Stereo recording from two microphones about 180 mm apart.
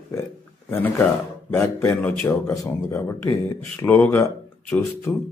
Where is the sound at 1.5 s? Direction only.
15° left (ahead or behind).